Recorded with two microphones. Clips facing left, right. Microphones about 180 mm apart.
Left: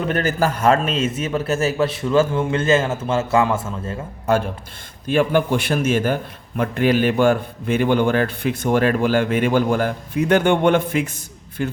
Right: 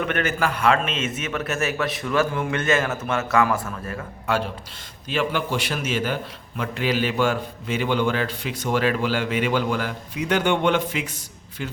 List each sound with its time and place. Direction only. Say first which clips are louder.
0.0 s a man's voice: left 4 dB; 35° left (ahead or behind)
5.0 s a man's voice: left 7 dB; 50° left (ahead or behind)